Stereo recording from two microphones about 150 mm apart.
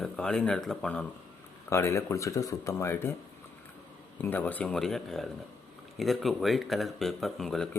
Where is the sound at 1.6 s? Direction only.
20° left (ahead or behind).